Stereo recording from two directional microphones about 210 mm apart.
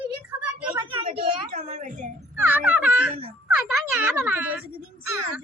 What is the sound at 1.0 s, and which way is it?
A woman's voice, 30° right (ahead or behind).